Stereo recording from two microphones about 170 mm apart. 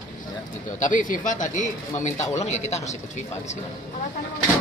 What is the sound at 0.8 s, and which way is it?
Speech, 50° left (ahead or behind).